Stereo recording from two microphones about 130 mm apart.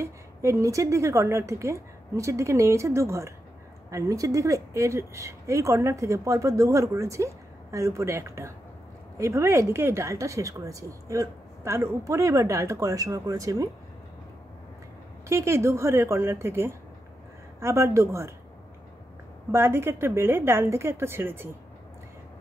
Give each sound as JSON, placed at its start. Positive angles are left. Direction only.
{"t": 0.0, "sound": "a woman's voice", "side_deg": -20}
{"t": 15.2, "sound": "a woman's voice", "side_deg": -20}
{"t": 19.5, "sound": "a woman's voice", "side_deg": -20}